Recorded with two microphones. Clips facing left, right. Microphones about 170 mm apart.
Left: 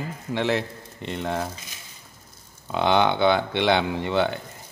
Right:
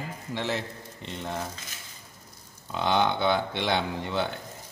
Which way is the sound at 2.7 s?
70° left (ahead or behind).